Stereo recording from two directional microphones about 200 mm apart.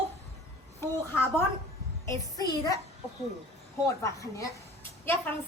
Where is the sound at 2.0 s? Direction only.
20° left (ahead or behind).